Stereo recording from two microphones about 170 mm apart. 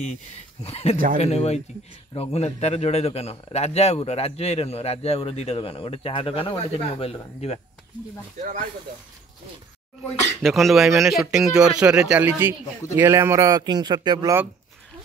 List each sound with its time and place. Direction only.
0.7 s a man's voice: 40° left (ahead or behind)
10.4 s speech: centre (ahead or behind); by 14.4 s 20° right (ahead or behind)